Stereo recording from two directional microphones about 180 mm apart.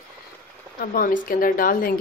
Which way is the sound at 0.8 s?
55° left (ahead or behind).